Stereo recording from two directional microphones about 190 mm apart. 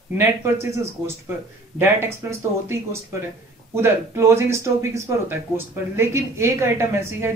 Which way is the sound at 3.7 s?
15° right (ahead or behind).